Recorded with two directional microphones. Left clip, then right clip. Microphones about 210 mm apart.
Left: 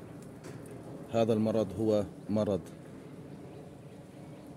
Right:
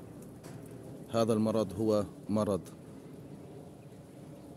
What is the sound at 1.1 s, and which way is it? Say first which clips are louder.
A man's voice: left 1 dB; 5° left (ahead or behind).